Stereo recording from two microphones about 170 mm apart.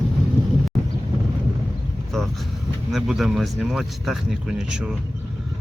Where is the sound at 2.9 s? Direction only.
Centre (ahead or behind).